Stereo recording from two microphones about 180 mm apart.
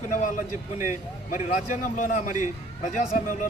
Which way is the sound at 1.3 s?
40° left (ahead or behind).